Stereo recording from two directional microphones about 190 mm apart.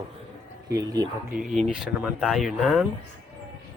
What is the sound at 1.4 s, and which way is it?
Speech, centre (ahead or behind).